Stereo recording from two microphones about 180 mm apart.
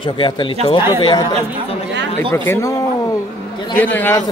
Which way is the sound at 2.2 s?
10° left (ahead or behind).